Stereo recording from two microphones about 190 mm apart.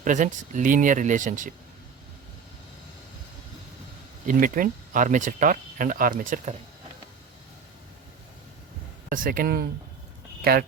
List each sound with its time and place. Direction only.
0.0 s speech: 40° right (ahead or behind)
4.3 s speech: 45° right (ahead or behind)
9.1 s speech: 45° right (ahead or behind)